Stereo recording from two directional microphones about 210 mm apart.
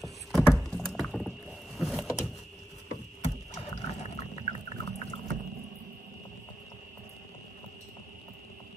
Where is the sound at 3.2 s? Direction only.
30° left (ahead or behind).